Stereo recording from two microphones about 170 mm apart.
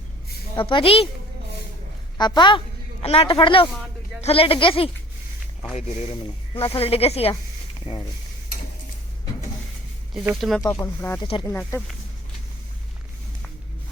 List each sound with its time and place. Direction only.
0.5 s speech: 30° left (ahead or behind)
2.1 s a woman's voice: 25° left (ahead or behind)
3.7 s a sound: centre (ahead or behind)
4.2 s speech: 35° left (ahead or behind)
10.2 s speech: centre (ahead or behind)
10.8 s speech: 15° left (ahead or behind)
11.2 s speech: 30° left (ahead or behind)
11.4 s speech: 15° left (ahead or behind)